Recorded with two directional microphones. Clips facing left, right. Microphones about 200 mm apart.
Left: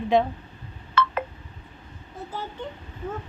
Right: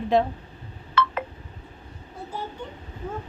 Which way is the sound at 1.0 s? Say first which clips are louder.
Even; 45° left (ahead or behind).